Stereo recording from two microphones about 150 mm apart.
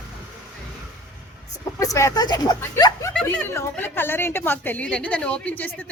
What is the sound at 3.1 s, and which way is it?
A woman's voice, 5° left (ahead or behind).